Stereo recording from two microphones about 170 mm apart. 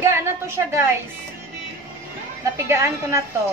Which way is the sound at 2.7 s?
15° right (ahead or behind).